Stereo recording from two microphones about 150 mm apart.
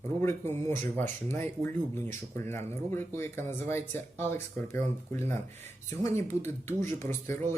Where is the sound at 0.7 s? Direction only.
15° left (ahead or behind).